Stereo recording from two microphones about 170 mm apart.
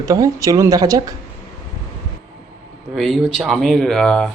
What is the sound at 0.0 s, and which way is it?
Speech, 20° right (ahead or behind).